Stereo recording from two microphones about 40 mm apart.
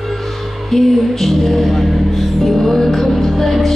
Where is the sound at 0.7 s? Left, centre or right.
Centre.